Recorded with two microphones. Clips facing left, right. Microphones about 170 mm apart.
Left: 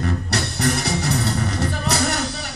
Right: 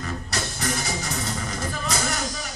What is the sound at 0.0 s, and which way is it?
Music, 65° left (ahead or behind).